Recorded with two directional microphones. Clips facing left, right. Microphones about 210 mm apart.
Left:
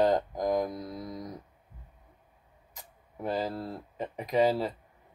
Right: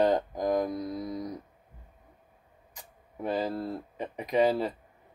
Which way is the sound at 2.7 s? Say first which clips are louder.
Right 1 dB; centre (ahead or behind).